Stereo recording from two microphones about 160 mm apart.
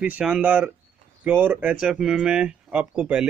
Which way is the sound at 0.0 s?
10° right (ahead or behind).